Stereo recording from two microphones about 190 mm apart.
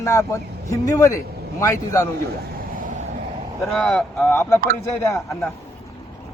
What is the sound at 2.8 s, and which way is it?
Vehicle, 45° right (ahead or behind).